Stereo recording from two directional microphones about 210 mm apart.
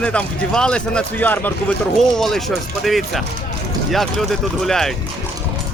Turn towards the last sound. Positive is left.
turn(degrees=0)  # may be behind; listen again after turning